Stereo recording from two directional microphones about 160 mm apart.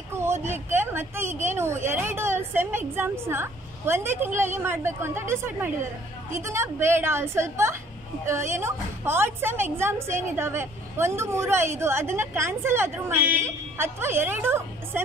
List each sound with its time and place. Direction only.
0.1 s a woman's voice: 15° right (ahead or behind)